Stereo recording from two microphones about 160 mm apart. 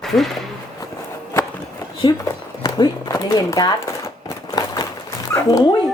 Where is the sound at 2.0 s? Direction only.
30° left (ahead or behind).